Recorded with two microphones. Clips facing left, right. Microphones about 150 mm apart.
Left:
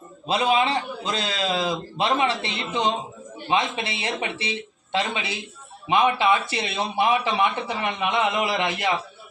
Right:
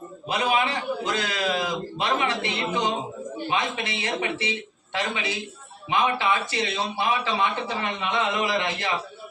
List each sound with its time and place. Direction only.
0.3 s a man's voice: 25° left (ahead or behind)